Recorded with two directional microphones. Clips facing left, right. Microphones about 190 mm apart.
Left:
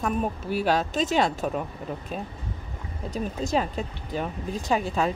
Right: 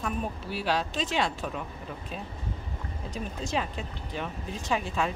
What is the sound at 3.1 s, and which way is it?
Speech, 40° left (ahead or behind).